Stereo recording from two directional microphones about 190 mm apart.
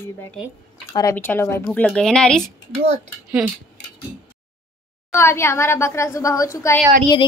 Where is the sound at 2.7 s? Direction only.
35° right (ahead or behind).